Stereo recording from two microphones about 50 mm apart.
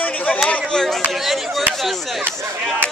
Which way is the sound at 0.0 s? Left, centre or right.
Left.